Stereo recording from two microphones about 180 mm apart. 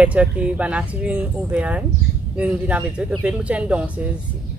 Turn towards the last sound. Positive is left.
turn(degrees=-5)  # may be behind; listen again after turning